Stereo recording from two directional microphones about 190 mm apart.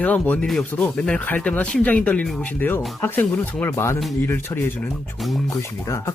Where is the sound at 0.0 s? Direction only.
10° left (ahead or behind).